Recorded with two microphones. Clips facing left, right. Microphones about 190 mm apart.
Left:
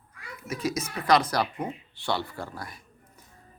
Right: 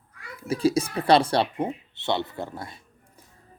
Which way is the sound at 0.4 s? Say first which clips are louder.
Right 8 dB; 30° right (ahead or behind).